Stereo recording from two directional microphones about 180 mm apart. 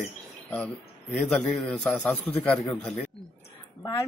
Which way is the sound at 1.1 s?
5° left (ahead or behind).